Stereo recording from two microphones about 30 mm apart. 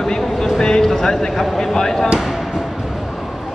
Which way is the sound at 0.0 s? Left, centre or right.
Centre.